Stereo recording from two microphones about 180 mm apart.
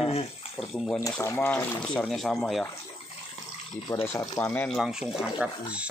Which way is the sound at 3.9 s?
15° left (ahead or behind).